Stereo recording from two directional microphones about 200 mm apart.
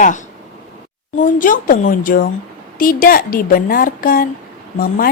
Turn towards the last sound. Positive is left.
turn(degrees=45)  # may be behind; listen again after turning